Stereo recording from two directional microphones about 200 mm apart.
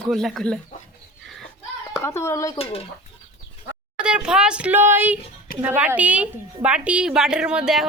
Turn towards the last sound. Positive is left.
turn(degrees=0)  # may be behind; listen again after turning